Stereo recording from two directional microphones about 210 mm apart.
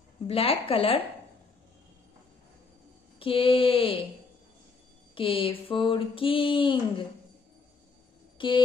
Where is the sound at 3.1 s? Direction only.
25° left (ahead or behind).